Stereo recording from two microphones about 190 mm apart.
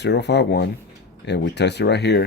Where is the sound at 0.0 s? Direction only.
65° left (ahead or behind).